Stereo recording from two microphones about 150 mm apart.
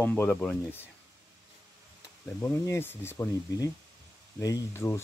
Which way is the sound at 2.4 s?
15° left (ahead or behind).